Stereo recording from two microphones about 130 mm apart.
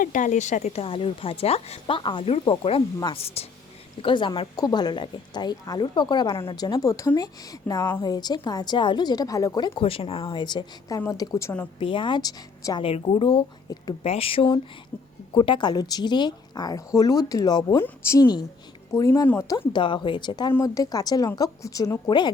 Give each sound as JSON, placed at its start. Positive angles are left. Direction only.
{"t": 0.0, "sound": "a woman's voice", "side_deg": 80}
{"t": 4.0, "sound": "a woman's voice", "side_deg": 40}
{"t": 9.6, "sound": "a woman's voice", "side_deg": 45}
{"t": 11.8, "sound": "a woman's voice", "side_deg": 40}
{"t": 12.8, "sound": "a woman's voice", "side_deg": 45}
{"t": 17.7, "sound": "speech", "side_deg": 20}
{"t": 19.5, "sound": "a woman's voice", "side_deg": 40}
{"t": 20.5, "sound": "speech", "side_deg": 25}